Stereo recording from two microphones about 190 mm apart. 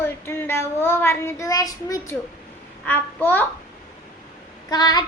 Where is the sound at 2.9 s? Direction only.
10° left (ahead or behind).